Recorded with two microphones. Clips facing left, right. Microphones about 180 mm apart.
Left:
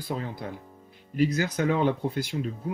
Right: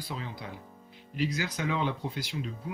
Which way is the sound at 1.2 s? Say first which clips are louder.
Left 7 dB; 50° left (ahead or behind).